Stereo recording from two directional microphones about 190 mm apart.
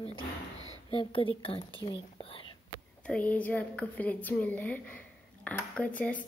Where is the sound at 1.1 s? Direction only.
30° left (ahead or behind).